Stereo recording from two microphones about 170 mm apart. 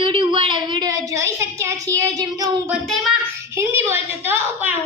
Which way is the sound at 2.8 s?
Centre (ahead or behind).